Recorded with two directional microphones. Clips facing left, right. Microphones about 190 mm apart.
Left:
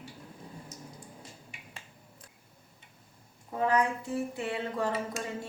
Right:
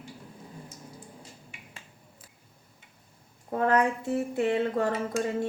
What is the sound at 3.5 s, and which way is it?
Speech, 55° right (ahead or behind).